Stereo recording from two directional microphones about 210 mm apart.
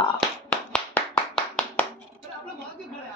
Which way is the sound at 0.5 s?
5° left (ahead or behind).